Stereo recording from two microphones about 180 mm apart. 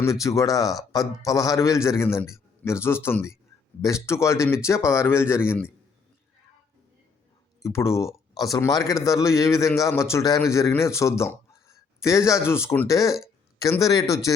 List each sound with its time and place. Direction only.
0.0 s a man's voice: 15° left (ahead or behind)
7.6 s a man's voice: 15° left (ahead or behind)